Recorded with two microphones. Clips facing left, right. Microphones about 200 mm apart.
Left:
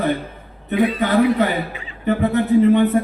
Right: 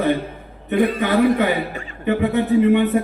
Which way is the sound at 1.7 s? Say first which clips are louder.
Right 3 dB; 45° right (ahead or behind).